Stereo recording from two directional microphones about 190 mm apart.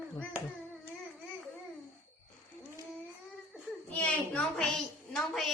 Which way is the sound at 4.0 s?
5° left (ahead or behind).